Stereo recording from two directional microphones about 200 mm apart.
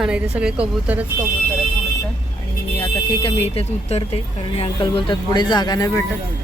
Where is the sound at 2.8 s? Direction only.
25° left (ahead or behind).